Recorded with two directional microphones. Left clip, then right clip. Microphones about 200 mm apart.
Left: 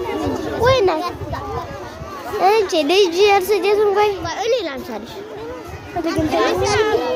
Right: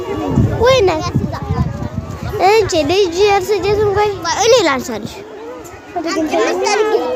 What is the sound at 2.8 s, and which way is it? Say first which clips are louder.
A child's voice: right 1 dB; centre (ahead or behind).